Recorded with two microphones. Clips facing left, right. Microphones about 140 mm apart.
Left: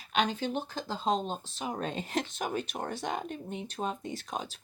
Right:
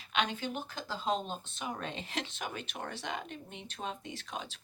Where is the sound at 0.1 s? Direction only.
35° left (ahead or behind).